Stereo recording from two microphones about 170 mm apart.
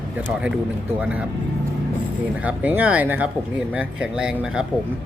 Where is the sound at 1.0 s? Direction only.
5° right (ahead or behind).